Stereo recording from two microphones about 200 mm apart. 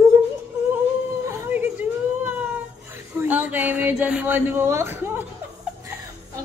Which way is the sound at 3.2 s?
10° right (ahead or behind).